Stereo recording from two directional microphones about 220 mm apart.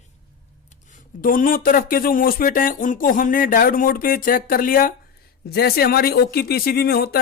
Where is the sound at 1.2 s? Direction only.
40° left (ahead or behind).